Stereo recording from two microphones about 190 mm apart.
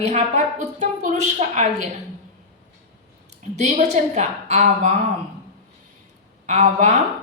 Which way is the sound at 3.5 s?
35° right (ahead or behind).